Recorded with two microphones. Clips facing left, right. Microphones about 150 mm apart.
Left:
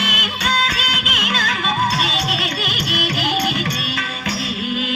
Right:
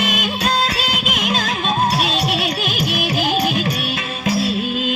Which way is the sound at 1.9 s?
45° right (ahead or behind).